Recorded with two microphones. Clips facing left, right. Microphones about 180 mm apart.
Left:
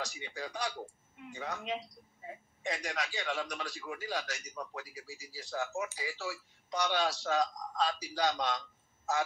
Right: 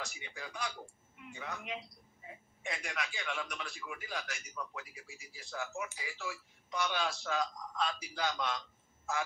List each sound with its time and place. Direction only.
0.0 s speech: 35° left (ahead or behind)